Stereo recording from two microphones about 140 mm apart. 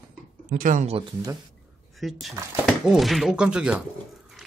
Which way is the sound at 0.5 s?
70° right (ahead or behind).